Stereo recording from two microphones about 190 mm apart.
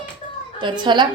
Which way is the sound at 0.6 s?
25° right (ahead or behind).